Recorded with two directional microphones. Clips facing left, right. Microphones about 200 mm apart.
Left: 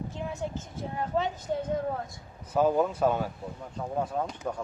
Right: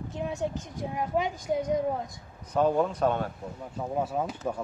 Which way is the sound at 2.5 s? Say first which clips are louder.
Even; 5° left (ahead or behind).